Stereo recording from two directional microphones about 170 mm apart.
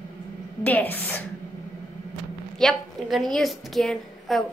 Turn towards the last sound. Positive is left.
turn(degrees=0)  # may be behind; listen again after turning